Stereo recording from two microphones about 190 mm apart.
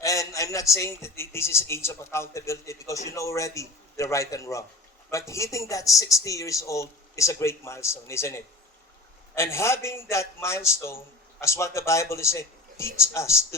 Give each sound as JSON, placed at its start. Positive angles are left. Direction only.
{"t": 0.0, "sound": "a man's voice", "side_deg": 15}